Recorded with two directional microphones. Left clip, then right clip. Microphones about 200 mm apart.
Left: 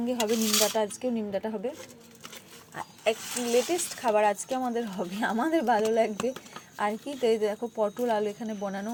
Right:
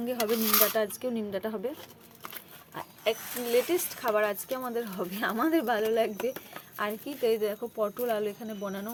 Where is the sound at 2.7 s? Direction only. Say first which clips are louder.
Left 2 dB; 5° right (ahead or behind).